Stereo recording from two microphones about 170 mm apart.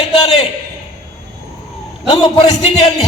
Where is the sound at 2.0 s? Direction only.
30° left (ahead or behind).